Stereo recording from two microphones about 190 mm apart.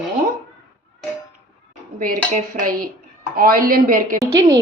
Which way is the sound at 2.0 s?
45° right (ahead or behind).